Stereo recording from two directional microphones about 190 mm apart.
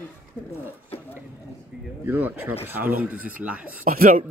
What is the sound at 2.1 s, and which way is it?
Speech, 10° right (ahead or behind).